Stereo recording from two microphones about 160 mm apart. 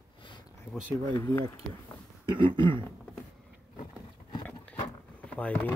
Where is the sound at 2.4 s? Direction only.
30° right (ahead or behind).